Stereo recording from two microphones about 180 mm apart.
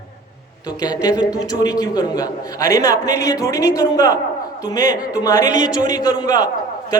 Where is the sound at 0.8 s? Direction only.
20° left (ahead or behind).